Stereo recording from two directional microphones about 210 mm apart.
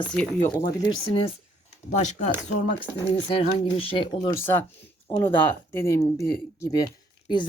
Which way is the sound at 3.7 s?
25° left (ahead or behind).